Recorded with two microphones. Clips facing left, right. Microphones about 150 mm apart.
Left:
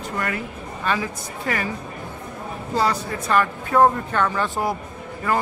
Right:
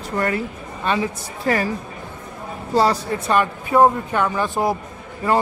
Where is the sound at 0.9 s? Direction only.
25° right (ahead or behind).